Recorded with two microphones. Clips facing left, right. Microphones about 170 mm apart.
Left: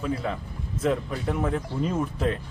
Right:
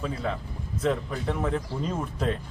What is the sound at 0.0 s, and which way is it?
Speech, 5° left (ahead or behind).